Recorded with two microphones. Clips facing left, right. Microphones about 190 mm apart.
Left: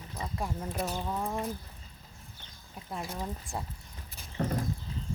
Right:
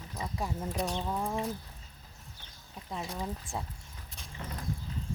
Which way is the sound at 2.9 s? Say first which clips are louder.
Even; 5° left (ahead or behind).